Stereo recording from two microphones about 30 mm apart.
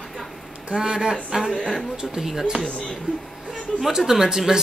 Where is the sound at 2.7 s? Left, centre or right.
Left.